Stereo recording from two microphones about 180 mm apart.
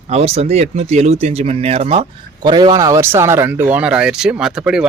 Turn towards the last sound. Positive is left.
turn(degrees=-5)  # may be behind; listen again after turning